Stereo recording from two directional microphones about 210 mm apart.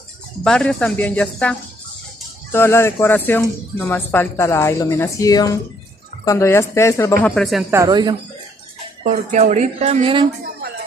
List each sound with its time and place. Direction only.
0.4 s speech: 5° left (ahead or behind)
7.7 s speech: 15° right (ahead or behind)
9.0 s speech: 35° right (ahead or behind)